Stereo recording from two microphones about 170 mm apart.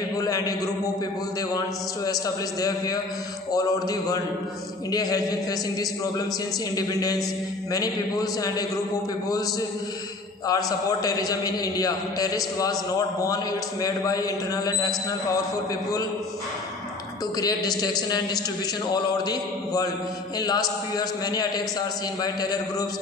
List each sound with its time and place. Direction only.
0.2 s a man's voice: 20° left (ahead or behind)
2.0 s a man's voice: 20° left (ahead or behind)
10.4 s a man's voice: 20° left (ahead or behind)
17.4 s a man's voice: 20° left (ahead or behind)